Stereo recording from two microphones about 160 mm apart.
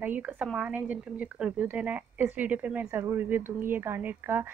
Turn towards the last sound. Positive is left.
turn(degrees=-10)  # may be behind; listen again after turning